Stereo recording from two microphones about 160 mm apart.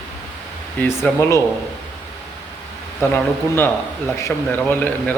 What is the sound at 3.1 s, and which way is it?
Speech, 15° left (ahead or behind).